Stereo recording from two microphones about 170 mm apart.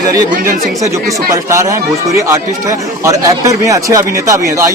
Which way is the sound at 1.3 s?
20° right (ahead or behind).